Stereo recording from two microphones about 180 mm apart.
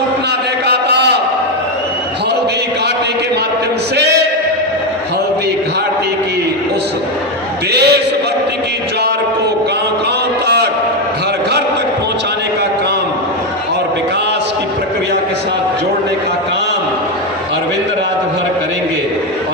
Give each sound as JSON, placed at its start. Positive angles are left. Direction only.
{"t": 0.7, "sound": "a sound", "side_deg": -70}
{"t": 7.7, "sound": "a man's voice", "side_deg": -65}
{"t": 10.4, "sound": "a man's voice", "side_deg": -70}